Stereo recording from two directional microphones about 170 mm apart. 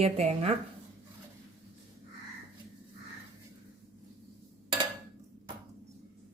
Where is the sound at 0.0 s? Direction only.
40° right (ahead or behind).